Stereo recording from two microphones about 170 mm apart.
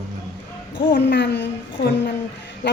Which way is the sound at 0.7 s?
90° left.